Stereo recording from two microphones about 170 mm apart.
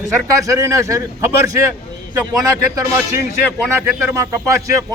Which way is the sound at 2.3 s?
20° right (ahead or behind).